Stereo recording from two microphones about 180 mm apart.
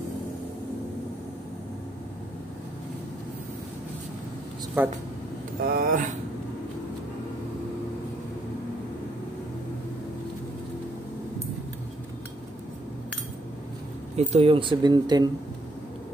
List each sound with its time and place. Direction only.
4.8 s speech: 10° right (ahead or behind)
5.6 s speech: 55° right (ahead or behind)
14.1 s speech: 35° right (ahead or behind)